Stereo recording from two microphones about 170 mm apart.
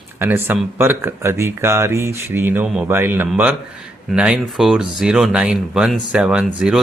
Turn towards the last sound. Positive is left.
turn(degrees=-5)  # may be behind; listen again after turning